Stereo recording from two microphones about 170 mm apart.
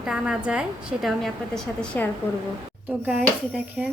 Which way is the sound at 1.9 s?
10° left (ahead or behind).